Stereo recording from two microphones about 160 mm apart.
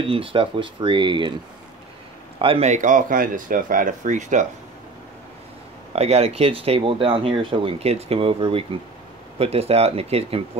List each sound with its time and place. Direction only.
0.0 s speech: 35° right (ahead or behind)
2.3 s speech: 35° right (ahead or behind); by 4.5 s 50° right (ahead or behind)
5.9 s speech: 40° right (ahead or behind)